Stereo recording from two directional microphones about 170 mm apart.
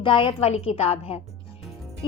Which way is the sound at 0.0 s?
30° left (ahead or behind).